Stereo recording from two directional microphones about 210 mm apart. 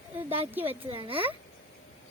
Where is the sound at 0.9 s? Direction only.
25° right (ahead or behind).